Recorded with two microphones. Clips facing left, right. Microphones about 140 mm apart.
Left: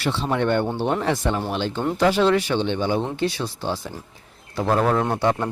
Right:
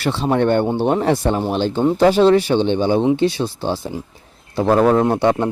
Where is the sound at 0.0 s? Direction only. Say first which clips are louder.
Right 5 dB; 45° right (ahead or behind).